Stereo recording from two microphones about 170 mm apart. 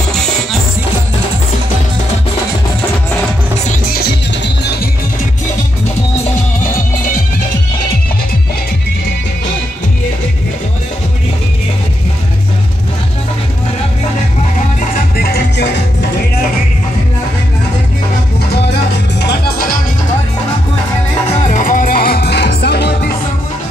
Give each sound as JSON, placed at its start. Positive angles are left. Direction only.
{"t": 3.9, "sound": "music", "side_deg": 70}
{"t": 15.0, "sound": "music", "side_deg": 65}
{"t": 18.5, "sound": "music", "side_deg": 80}
{"t": 21.3, "sound": "music", "side_deg": 45}